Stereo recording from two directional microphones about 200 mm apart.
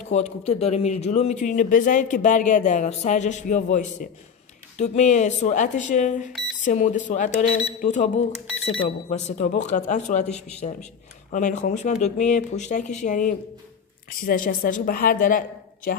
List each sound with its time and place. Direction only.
0.1 s a man's voice: 35° left (ahead or behind)